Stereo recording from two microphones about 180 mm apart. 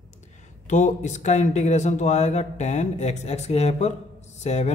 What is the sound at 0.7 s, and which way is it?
Speech, 40° left (ahead or behind).